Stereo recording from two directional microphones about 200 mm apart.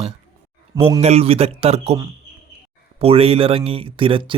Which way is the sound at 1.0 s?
30° right (ahead or behind).